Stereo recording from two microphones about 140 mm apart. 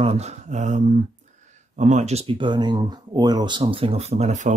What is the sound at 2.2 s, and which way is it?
Speech, 35° right (ahead or behind).